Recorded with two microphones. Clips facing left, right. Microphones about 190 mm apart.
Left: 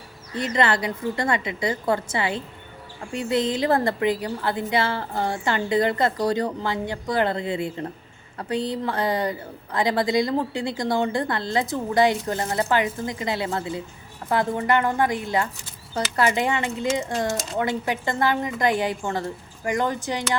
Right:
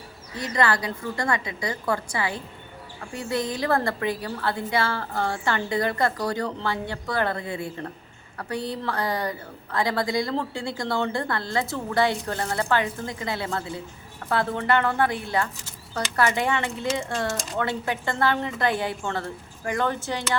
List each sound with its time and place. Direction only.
0.3 s a woman's voice: 25° left (ahead or behind)